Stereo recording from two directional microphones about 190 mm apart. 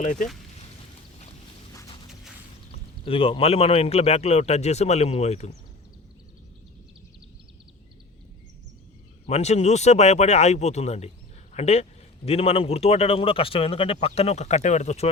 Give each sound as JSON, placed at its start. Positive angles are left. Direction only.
{"t": 0.0, "sound": "speech", "side_deg": 40}
{"t": 2.7, "sound": "speech", "side_deg": 30}
{"t": 9.2, "sound": "speech", "side_deg": 35}